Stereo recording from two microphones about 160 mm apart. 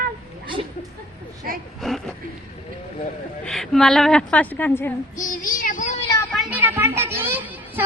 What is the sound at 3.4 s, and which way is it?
A woman's voice, centre (ahead or behind).